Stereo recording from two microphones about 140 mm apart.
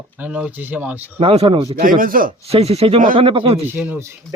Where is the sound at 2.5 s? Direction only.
45° right (ahead or behind).